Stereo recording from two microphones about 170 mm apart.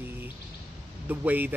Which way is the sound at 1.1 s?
10° right (ahead or behind).